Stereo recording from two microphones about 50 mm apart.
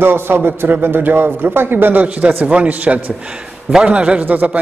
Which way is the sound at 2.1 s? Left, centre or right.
Right.